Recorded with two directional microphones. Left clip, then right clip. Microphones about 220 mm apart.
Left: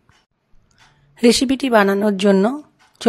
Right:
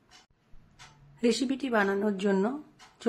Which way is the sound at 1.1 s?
45° left (ahead or behind).